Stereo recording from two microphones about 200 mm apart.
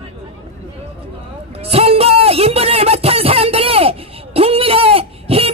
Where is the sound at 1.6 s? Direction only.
30° right (ahead or behind).